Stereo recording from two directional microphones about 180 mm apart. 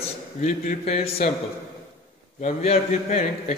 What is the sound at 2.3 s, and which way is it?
Speech, 40° left (ahead or behind).